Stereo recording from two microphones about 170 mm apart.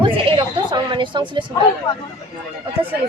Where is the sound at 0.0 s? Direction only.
30° right (ahead or behind).